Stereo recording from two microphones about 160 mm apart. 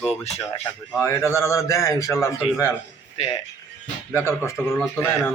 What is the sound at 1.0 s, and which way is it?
A man's voice, 20° left (ahead or behind).